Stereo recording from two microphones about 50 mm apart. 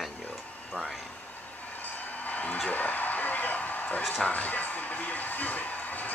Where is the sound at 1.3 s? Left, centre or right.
Left.